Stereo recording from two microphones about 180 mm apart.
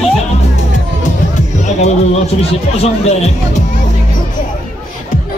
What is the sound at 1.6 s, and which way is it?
Music, 40° left (ahead or behind).